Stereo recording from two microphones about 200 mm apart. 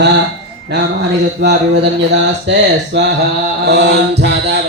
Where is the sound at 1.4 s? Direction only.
55° right (ahead or behind).